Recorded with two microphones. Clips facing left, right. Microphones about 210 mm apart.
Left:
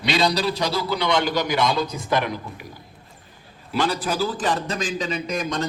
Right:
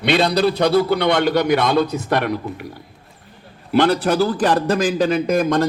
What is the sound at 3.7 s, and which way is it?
A man's voice, 65° right (ahead or behind).